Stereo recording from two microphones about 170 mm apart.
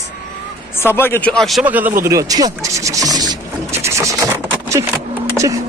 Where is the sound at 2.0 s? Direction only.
20° right (ahead or behind).